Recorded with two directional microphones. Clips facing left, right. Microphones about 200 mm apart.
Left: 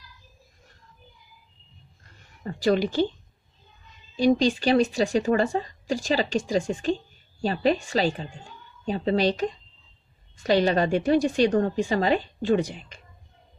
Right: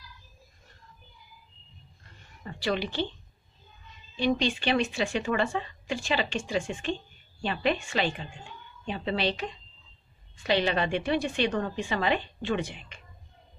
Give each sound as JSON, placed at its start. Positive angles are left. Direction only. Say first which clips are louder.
{"t": 2.4, "sound": "speech", "louder": "left 7 dB", "side_deg": 40}
{"t": 4.2, "sound": "speech", "louder": "left 6 dB", "side_deg": 40}